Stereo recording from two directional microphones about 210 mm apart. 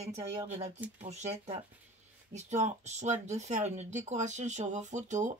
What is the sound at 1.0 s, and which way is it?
Speech, 30° right (ahead or behind).